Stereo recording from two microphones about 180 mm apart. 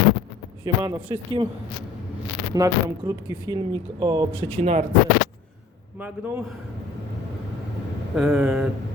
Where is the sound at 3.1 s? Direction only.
20° right (ahead or behind).